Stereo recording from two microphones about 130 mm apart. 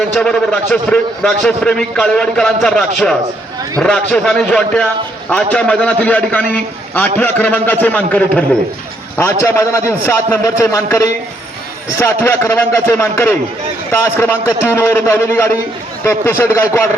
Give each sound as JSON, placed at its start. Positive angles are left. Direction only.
{"t": 0.2, "sound": "a man's voice", "side_deg": 5}
{"t": 14.7, "sound": "a man's voice", "side_deg": 20}